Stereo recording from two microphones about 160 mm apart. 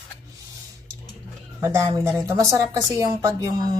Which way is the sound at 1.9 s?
15° right (ahead or behind).